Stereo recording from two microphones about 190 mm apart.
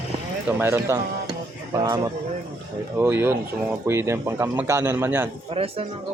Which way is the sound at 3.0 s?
10° right (ahead or behind).